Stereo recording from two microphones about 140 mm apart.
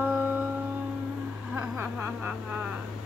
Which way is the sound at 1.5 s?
15° right (ahead or behind).